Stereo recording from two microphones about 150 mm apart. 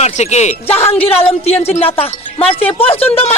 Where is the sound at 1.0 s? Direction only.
40° left (ahead or behind).